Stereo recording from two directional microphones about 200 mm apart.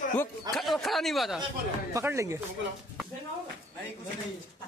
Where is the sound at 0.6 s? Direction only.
Centre (ahead or behind).